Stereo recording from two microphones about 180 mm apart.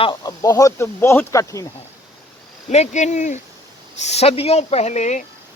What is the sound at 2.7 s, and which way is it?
Speech, 40° left (ahead or behind).